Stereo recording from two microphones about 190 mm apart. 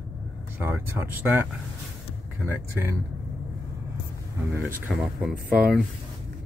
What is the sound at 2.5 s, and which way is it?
Speech, 10° right (ahead or behind).